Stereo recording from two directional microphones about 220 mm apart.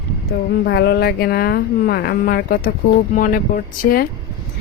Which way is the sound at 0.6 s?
50° left (ahead or behind).